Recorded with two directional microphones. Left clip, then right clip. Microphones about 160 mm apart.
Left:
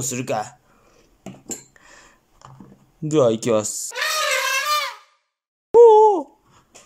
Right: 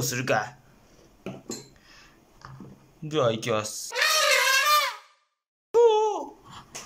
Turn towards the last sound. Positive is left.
turn(degrees=50)  # may be behind; listen again after turning